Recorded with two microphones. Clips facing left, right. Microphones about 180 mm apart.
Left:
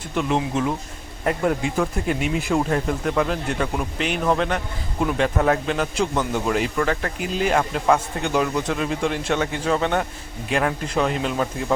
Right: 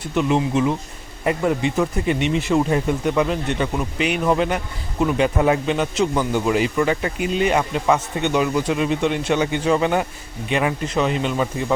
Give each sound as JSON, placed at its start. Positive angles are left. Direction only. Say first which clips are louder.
{"t": 0.1, "sound": "speech", "louder": "right 3 dB", "side_deg": -5}